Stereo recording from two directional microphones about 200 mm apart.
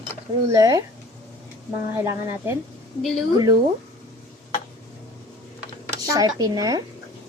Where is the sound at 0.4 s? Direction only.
15° right (ahead or behind).